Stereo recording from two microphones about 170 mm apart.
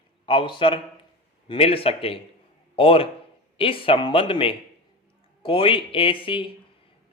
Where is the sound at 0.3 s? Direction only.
30° left (ahead or behind).